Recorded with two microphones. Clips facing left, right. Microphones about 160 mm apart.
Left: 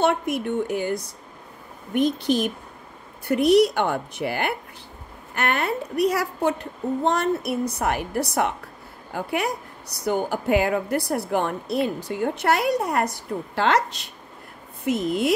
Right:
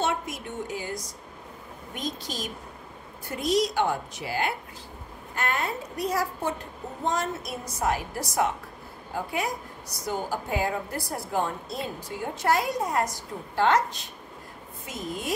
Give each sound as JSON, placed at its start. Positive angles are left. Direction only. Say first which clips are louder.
{"t": 0.0, "sound": "a woman's voice", "louder": "left 7 dB", "side_deg": 60}
{"t": 13.6, "sound": "a woman's voice", "louder": "left 1 dB", "side_deg": 75}